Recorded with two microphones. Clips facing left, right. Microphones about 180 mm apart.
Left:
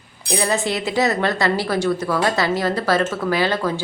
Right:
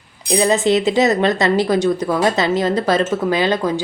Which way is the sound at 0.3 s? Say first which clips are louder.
Right 6 dB; 20° right (ahead or behind).